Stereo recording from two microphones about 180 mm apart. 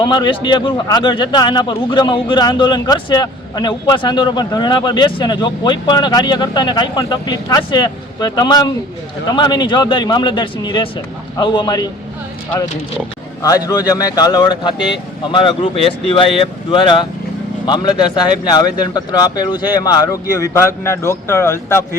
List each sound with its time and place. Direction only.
0.0 s a man's voice: 25° left (ahead or behind)
13.7 s a man's voice: 20° left (ahead or behind)